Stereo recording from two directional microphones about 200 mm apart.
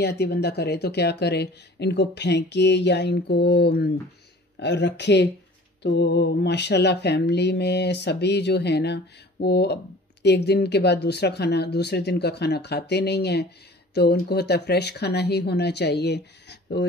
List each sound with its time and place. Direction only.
0.0 s speech: 55° left (ahead or behind)